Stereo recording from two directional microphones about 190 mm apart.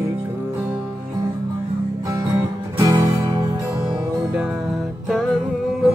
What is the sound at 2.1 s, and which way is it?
Music, 15° right (ahead or behind).